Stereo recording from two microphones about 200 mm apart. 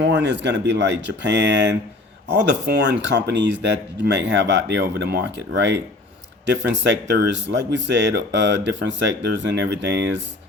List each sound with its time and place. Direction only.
0.0 s speech: 60° right (ahead or behind)